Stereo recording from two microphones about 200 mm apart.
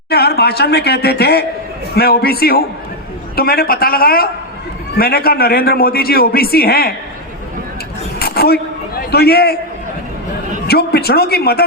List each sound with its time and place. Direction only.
0.1 s a woman's voice: 55° left (ahead or behind)
8.2 s a sound: 50° left (ahead or behind)
9.0 s a man's voice: 50° left (ahead or behind)
10.7 s a man's voice: 50° left (ahead or behind)